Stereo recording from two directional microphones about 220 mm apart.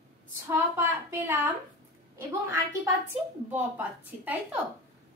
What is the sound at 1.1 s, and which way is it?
Speech, 10° right (ahead or behind).